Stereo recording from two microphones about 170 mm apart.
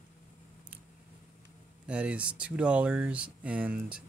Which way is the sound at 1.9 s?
5° right (ahead or behind).